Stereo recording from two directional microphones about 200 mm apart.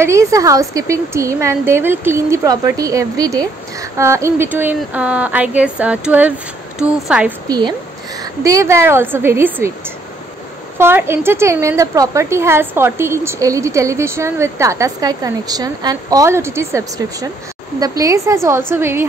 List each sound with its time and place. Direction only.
0.0 s a woman's voice: 15° right (ahead or behind)
7.4 s a woman's voice: 20° right (ahead or behind)